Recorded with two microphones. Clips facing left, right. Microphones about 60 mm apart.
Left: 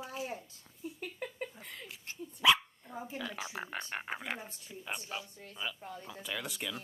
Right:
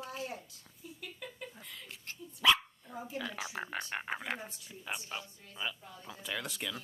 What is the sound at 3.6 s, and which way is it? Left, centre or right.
A child's voice, centre.